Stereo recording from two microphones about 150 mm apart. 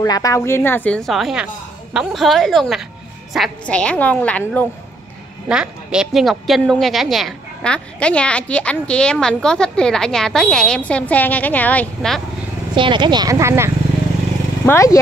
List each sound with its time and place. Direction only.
0.0 s a woman's voice: 25° left (ahead or behind); by 4.6 s 10° left (ahead or behind)
5.5 s a woman's voice: 5° right (ahead or behind)
12.7 s speech: 30° right (ahead or behind)
14.7 s speech: 20° left (ahead or behind)